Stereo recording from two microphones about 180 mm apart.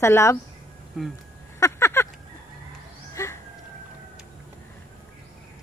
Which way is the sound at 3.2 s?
15° left (ahead or behind).